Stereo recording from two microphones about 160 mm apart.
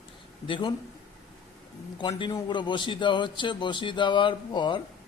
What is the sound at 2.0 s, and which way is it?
A man's voice, 30° left (ahead or behind).